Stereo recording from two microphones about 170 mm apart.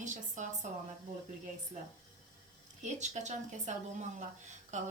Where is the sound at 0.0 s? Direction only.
50° right (ahead or behind).